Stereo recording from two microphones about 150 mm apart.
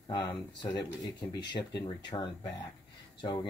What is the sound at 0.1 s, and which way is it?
Speech, 30° left (ahead or behind).